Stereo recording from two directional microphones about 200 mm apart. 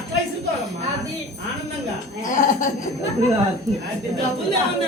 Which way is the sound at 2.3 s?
40° left (ahead or behind).